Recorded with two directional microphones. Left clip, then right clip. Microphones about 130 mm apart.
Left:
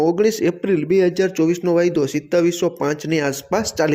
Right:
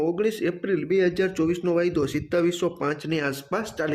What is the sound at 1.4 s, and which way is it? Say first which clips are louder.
Speech: left 6 dB; 30° left (ahead or behind).